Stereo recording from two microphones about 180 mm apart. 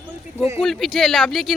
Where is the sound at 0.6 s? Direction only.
Centre (ahead or behind).